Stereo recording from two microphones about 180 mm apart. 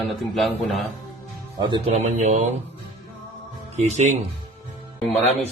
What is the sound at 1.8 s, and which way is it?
Speech, 40° right (ahead or behind).